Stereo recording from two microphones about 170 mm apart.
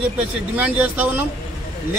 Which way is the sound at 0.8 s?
10° right (ahead or behind).